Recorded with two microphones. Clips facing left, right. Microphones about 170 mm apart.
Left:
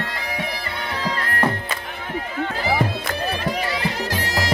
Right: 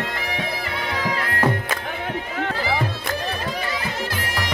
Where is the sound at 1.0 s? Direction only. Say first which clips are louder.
Even; 10° right (ahead or behind).